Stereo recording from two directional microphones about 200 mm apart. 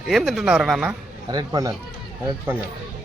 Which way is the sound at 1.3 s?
20° right (ahead or behind).